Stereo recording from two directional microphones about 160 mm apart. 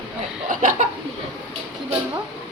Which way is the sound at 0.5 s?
55° right (ahead or behind).